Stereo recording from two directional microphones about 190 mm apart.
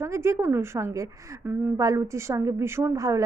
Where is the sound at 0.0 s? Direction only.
15° right (ahead or behind).